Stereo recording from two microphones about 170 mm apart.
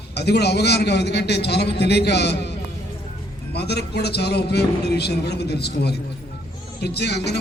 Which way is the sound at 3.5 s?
75° left (ahead or behind).